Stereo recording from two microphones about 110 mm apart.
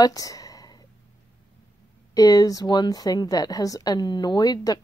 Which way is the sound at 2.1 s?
35° left (ahead or behind).